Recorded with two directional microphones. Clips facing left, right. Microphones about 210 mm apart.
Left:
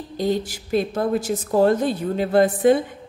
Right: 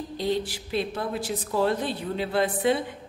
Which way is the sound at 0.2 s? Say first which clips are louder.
Left 5 dB; 45° left (ahead or behind).